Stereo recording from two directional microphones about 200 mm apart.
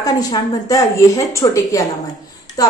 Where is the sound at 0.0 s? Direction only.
20° left (ahead or behind).